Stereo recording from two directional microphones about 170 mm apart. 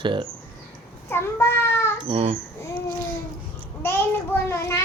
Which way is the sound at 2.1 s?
35° right (ahead or behind).